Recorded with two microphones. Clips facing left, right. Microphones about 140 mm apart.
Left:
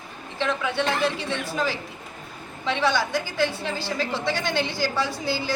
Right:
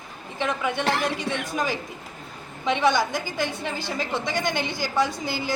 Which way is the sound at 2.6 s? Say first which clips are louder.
Right 2 dB; 15° right (ahead or behind).